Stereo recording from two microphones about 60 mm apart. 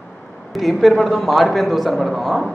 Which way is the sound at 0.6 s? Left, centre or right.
Centre.